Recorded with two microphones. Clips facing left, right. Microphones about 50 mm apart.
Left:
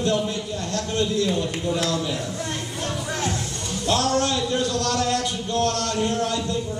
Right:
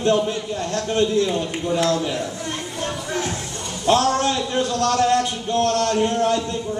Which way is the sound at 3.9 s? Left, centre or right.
Right.